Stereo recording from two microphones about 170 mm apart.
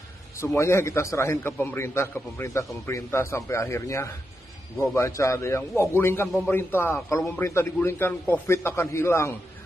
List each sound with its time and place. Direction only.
0.4 s a man's voice: 15° left (ahead or behind)